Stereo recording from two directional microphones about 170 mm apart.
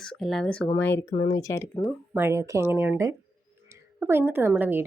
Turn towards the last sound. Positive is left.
turn(degrees=-10)  # may be behind; listen again after turning